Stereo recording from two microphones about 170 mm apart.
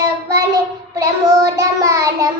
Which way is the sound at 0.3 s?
20° right (ahead or behind).